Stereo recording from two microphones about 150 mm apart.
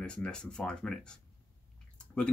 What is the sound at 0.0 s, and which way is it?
Speech, 5° left (ahead or behind).